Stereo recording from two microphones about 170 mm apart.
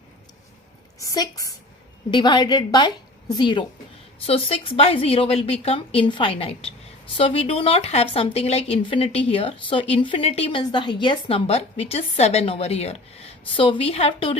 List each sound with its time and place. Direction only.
0.9 s a woman's voice: 20° left (ahead or behind)